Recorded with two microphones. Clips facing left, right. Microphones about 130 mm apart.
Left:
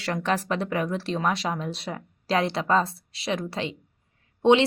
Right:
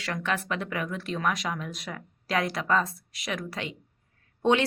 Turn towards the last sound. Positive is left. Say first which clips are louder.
# left 5 dB
turn(degrees=20)  # may be behind; listen again after turning